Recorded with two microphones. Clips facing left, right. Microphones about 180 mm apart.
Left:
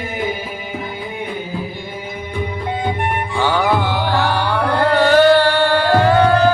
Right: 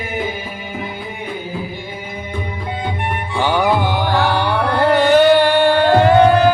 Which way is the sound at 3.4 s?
15° right (ahead or behind).